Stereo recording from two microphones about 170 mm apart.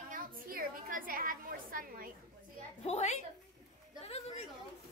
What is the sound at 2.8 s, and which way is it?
Speech, 40° left (ahead or behind).